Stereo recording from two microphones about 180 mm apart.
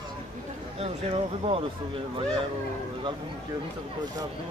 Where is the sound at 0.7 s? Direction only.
30° right (ahead or behind).